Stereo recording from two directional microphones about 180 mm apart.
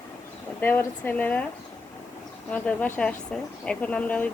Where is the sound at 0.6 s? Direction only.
10° left (ahead or behind).